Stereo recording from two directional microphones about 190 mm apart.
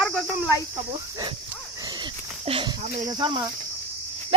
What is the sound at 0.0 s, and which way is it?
Speech, centre (ahead or behind).